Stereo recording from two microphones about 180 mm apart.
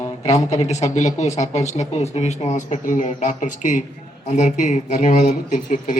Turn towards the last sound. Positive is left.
turn(degrees=45)  # may be behind; listen again after turning